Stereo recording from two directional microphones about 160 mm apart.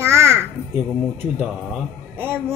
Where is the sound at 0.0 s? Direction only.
15° right (ahead or behind).